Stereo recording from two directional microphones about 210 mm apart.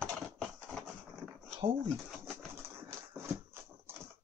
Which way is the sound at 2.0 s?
Centre (ahead or behind).